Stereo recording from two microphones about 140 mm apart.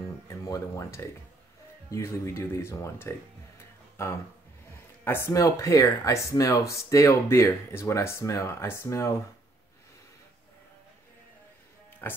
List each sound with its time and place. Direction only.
0.3 s speech: 20° left (ahead or behind)